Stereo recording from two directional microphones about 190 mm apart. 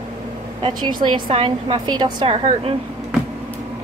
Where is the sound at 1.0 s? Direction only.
25° right (ahead or behind).